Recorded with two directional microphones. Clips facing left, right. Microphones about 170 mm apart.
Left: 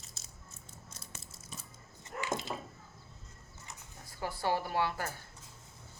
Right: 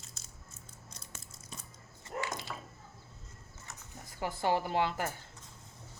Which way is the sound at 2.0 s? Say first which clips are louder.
Left 2 dB; 20° left (ahead or behind).